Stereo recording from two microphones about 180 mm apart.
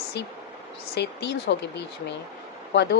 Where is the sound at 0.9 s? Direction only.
75° left (ahead or behind).